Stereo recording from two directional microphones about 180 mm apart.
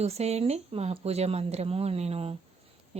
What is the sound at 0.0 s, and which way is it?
Speech, 35° right (ahead or behind).